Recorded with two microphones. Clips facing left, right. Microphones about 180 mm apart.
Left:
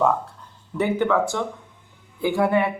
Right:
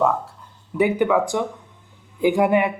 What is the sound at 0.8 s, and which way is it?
Speech, 10° right (ahead or behind).